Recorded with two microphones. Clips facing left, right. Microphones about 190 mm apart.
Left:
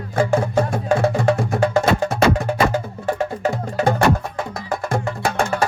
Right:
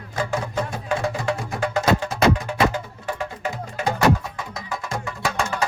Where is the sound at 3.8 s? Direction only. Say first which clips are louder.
Left 3 dB; 55° left (ahead or behind).